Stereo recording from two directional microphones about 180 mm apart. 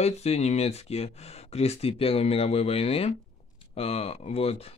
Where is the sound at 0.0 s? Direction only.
35° left (ahead or behind).